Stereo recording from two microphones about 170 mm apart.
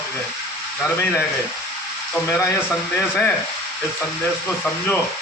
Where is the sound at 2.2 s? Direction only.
15° left (ahead or behind).